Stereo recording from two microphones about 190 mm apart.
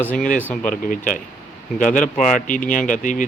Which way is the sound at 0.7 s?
45° left (ahead or behind).